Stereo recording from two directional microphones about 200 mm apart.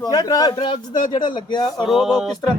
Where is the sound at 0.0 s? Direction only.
20° left (ahead or behind).